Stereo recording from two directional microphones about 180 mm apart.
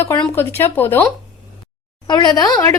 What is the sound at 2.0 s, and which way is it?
Speech, 25° left (ahead or behind).